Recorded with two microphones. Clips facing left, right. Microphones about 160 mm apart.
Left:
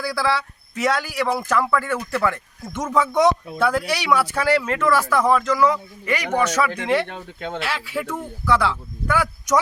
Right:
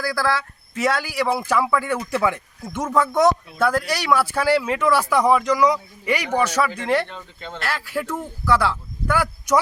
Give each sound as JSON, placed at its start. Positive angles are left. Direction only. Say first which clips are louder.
{"t": 0.0, "sound": "speech", "louder": "even", "side_deg": 0}
{"t": 2.6, "sound": "speech", "louder": "even", "side_deg": -5}
{"t": 7.1, "sound": "speech", "louder": "left 5 dB", "side_deg": 55}
{"t": 7.6, "sound": "speech", "louder": "right 3 dB", "side_deg": 0}